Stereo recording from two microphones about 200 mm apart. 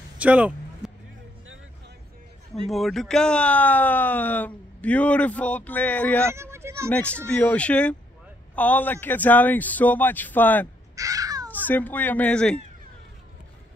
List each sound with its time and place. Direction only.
0.2 s a sound: 5° right (ahead or behind)
2.7 s speech: centre (ahead or behind)
6.2 s a sound: 15° right (ahead or behind)
6.9 s speech: 5° left (ahead or behind)
11.0 s caw: 15° right (ahead or behind)
11.6 s speech: 10° left (ahead or behind)